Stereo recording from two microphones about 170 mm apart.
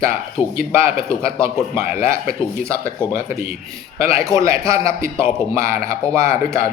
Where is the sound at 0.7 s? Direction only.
15° right (ahead or behind).